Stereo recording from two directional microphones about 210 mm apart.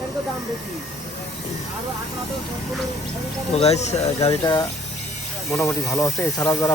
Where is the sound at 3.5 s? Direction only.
30° left (ahead or behind).